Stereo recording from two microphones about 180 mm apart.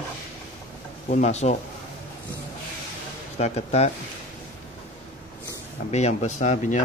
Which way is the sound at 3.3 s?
35° left (ahead or behind).